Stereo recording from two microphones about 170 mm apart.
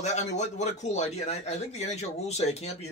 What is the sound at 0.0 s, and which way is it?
Speech, 40° left (ahead or behind).